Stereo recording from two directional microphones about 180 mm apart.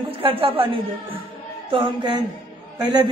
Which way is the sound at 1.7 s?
25° right (ahead or behind).